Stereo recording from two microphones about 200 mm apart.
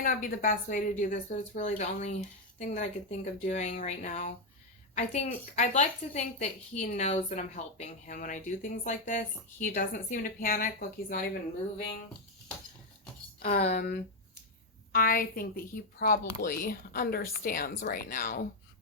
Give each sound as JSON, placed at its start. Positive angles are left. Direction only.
{"t": 0.0, "sound": "a woman's voice", "side_deg": 45}
{"t": 13.6, "sound": "a woman's voice", "side_deg": 35}
{"t": 14.9, "sound": "a woman's voice", "side_deg": 45}